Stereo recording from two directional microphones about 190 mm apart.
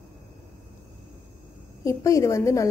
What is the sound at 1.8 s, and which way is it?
Speech, 15° left (ahead or behind).